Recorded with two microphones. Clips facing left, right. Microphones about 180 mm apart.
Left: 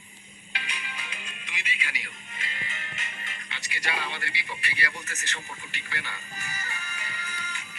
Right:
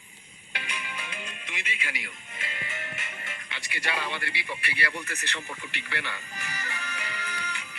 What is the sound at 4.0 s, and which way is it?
Speech, 55° right (ahead or behind).